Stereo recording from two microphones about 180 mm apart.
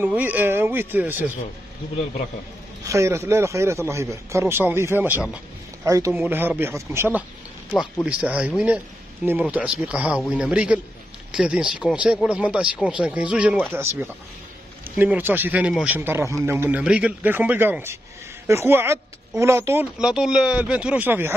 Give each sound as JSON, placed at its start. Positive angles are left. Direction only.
{"t": 0.0, "sound": "a man's voice", "side_deg": -10}
{"t": 2.8, "sound": "a man's voice", "side_deg": -15}